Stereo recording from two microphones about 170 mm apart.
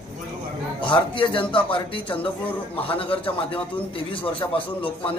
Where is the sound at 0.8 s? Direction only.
30° left (ahead or behind).